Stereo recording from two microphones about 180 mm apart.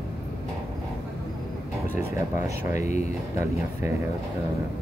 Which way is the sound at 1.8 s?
55° right (ahead or behind).